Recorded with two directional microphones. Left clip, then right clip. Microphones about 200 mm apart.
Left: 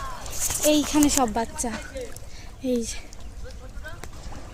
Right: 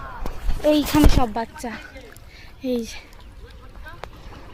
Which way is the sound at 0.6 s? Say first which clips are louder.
Right 3 dB; 10° right (ahead or behind).